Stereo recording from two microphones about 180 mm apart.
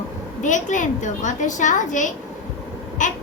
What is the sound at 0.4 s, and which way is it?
A child's voice, 45° left (ahead or behind).